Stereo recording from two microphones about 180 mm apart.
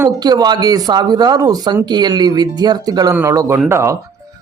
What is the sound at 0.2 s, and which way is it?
A man's voice, 20° right (ahead or behind).